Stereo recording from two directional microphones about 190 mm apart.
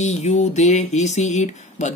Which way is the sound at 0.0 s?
35° left (ahead or behind).